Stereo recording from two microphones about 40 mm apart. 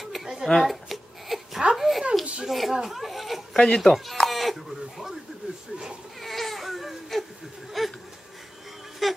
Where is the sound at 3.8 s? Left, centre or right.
Centre.